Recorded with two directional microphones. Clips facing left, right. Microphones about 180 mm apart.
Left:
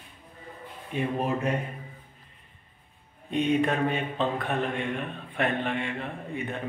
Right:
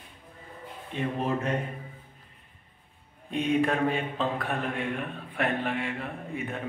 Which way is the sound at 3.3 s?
Centre (ahead or behind).